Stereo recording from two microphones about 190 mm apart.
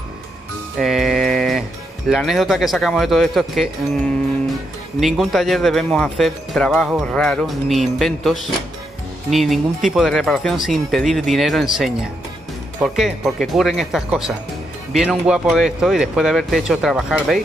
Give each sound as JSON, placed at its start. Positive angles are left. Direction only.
{"t": 0.7, "sound": "music", "side_deg": 0}
{"t": 2.0, "sound": "speech", "side_deg": 0}
{"t": 5.0, "sound": "speech", "side_deg": 0}